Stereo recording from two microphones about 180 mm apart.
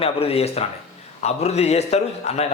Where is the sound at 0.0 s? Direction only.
35° left (ahead or behind).